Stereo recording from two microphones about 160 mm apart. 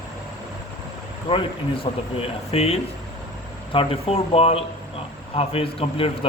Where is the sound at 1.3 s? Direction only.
35° left (ahead or behind).